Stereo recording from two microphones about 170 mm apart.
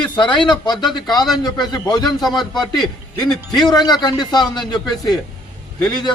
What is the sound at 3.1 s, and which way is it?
A man's voice, 20° left (ahead or behind).